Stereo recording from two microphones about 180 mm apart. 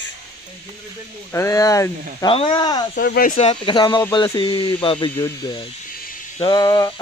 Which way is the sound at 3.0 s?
55° left (ahead or behind).